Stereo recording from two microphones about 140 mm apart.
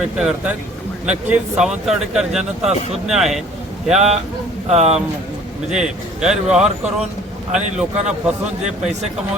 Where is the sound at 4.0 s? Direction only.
50° right (ahead or behind).